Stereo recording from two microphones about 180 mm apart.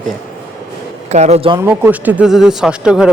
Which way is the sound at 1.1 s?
40° right (ahead or behind).